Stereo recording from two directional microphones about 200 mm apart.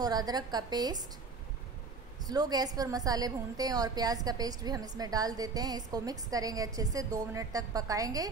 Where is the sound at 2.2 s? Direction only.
20° right (ahead or behind).